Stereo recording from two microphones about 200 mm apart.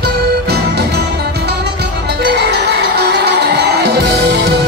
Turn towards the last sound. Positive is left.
turn(degrees=-55)  # may be behind; listen again after turning